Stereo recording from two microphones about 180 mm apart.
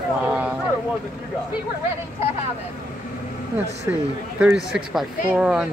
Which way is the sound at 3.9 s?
15° right (ahead or behind).